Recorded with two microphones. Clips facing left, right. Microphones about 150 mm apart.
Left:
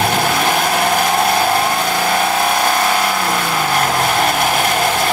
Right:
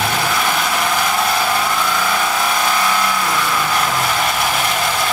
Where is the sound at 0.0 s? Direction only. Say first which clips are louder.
Left 3 dB; 45° left (ahead or behind).